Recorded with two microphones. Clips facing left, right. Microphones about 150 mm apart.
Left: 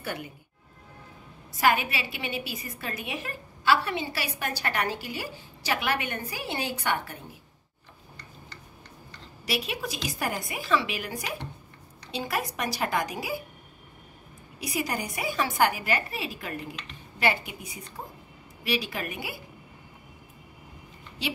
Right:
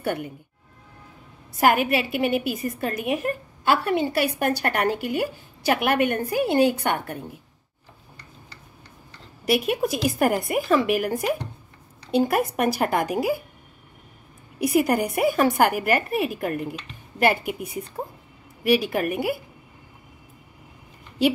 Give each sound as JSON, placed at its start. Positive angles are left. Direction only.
{"t": 0.0, "sound": "speech", "side_deg": -55}
{"t": 1.6, "sound": "a woman's voice", "side_deg": -50}
{"t": 9.5, "sound": "a woman's voice", "side_deg": -55}
{"t": 14.6, "sound": "a woman's voice", "side_deg": -55}